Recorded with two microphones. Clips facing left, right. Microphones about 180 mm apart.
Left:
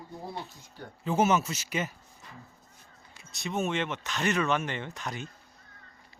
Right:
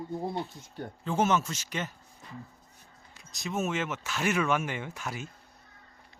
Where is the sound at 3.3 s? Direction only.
Centre (ahead or behind).